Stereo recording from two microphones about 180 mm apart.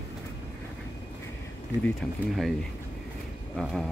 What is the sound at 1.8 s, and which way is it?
Speech, centre (ahead or behind).